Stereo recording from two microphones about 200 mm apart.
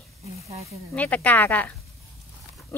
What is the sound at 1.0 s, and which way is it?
Speech, 5° left (ahead or behind).